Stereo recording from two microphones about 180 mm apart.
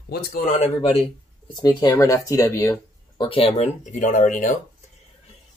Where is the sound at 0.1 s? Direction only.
60° left (ahead or behind).